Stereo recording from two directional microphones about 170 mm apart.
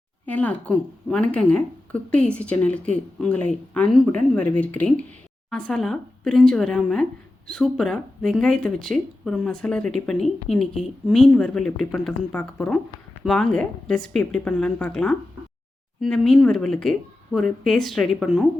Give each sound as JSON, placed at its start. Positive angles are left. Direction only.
{"t": 0.3, "sound": "a woman's voice", "side_deg": 10}